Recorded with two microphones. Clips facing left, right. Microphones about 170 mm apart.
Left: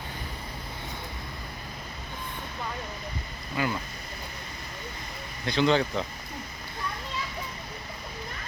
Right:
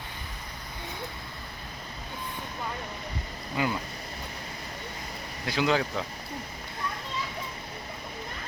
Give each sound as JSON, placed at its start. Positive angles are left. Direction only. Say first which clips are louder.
{"t": 3.6, "sound": "speech", "louder": "even", "side_deg": -20}
{"t": 5.5, "sound": "speech", "louder": "left 3 dB", "side_deg": -5}